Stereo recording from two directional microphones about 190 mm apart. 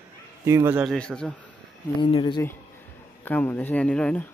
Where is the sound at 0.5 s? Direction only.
10° right (ahead or behind).